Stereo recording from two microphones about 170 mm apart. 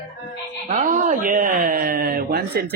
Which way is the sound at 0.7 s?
45° right (ahead or behind).